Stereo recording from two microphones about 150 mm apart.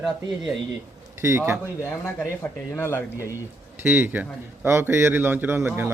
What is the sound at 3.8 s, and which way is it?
A man's voice, 15° right (ahead or behind).